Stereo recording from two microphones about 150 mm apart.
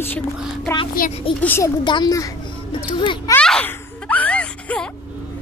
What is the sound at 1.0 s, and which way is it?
Speech, 70° left (ahead or behind).